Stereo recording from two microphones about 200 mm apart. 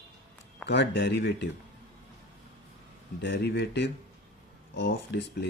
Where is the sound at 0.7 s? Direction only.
60° left (ahead or behind).